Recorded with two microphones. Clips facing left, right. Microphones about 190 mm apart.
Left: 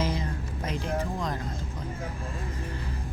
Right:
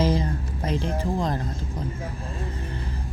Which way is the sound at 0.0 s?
35° right (ahead or behind).